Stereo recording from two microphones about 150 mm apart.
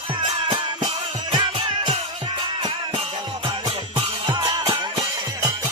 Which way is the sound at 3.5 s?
35° right (ahead or behind).